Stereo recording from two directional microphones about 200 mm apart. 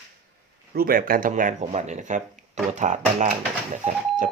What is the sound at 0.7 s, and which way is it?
Speech, 45° right (ahead or behind).